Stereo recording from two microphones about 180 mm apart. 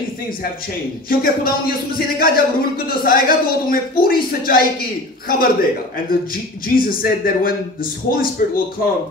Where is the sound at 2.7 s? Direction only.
55° left (ahead or behind).